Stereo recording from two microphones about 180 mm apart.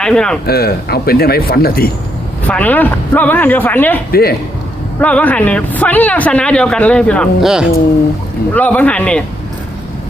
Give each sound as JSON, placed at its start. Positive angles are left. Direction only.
{"t": 0.0, "sound": "speech", "side_deg": 5}
{"t": 0.4, "sound": "speech", "side_deg": 60}
{"t": 2.5, "sound": "speech", "side_deg": 10}
{"t": 4.1, "sound": "speech", "side_deg": 60}
{"t": 4.9, "sound": "speech", "side_deg": 10}
{"t": 8.5, "sound": "speech", "side_deg": 10}